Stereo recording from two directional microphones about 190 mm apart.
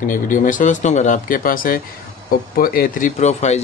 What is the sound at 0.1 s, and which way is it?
Speech, 45° left (ahead or behind).